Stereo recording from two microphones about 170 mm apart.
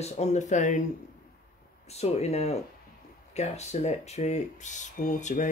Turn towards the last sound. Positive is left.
turn(degrees=45)  # may be behind; listen again after turning